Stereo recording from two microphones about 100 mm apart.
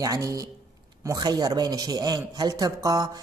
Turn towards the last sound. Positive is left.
turn(degrees=-40)  # may be behind; listen again after turning